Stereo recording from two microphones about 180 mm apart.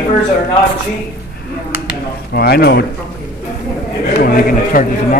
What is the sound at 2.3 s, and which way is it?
Speech, 60° left (ahead or behind).